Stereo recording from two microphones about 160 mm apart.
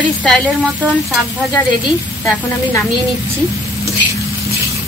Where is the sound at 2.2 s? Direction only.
20° left (ahead or behind).